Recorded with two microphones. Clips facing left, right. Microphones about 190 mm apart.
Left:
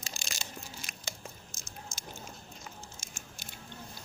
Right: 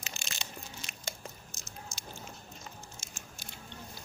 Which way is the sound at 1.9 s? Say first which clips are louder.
Even; 90° left.